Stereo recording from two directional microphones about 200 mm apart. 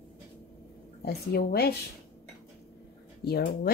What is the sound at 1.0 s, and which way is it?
Speech, 55° left (ahead or behind).